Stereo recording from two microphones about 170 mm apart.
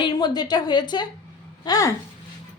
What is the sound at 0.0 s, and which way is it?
A woman's voice, 25° left (ahead or behind).